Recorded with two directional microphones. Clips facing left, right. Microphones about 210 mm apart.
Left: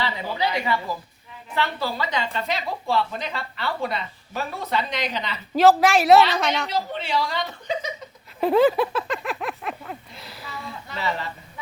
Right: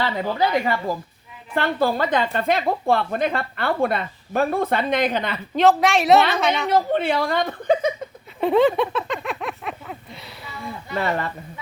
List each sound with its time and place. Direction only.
0.0 s a woman's voice: 50° right (ahead or behind)
5.5 s a woman's voice: centre (ahead or behind)
6.7 s a woman's voice: 55° right (ahead or behind)
8.4 s a sound: centre (ahead or behind)
10.9 s a woman's voice: 55° right (ahead or behind)